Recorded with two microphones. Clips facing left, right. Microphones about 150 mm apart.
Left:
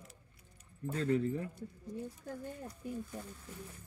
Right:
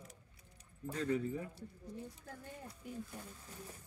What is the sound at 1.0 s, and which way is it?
Speech, 5° right (ahead or behind).